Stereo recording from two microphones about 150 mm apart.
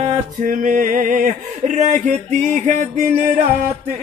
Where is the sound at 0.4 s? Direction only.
55° right (ahead or behind).